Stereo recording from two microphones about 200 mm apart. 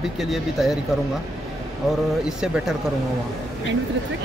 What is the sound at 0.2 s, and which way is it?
Speech, centre (ahead or behind).